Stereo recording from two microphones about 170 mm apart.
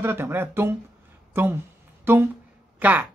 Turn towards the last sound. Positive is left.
turn(degrees=-10)  # may be behind; listen again after turning